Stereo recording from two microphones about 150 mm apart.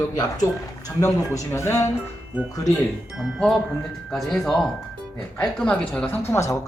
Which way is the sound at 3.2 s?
Centre (ahead or behind).